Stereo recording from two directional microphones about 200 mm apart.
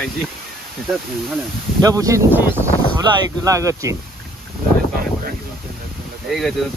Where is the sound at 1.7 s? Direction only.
15° right (ahead or behind).